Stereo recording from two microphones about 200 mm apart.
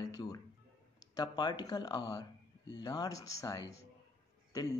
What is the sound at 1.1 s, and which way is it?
Speech, 20° left (ahead or behind).